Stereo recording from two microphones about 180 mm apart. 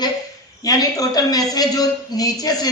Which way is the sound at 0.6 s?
20° left (ahead or behind).